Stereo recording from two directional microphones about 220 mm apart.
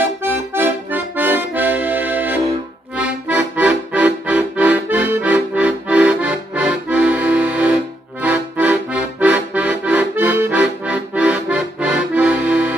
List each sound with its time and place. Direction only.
0.0 s accordion: 10° right (ahead or behind)